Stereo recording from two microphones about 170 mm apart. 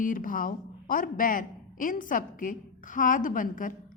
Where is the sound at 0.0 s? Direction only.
55° left (ahead or behind).